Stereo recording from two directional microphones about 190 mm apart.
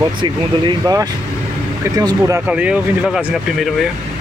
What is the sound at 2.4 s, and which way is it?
Speech, 5° right (ahead or behind).